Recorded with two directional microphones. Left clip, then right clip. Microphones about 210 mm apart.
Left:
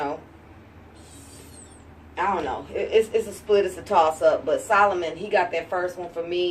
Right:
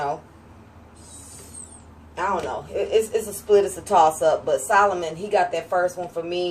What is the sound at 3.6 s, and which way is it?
Speech, 15° right (ahead or behind).